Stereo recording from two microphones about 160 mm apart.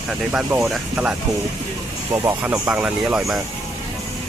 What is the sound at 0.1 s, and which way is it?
Speech, 10° right (ahead or behind).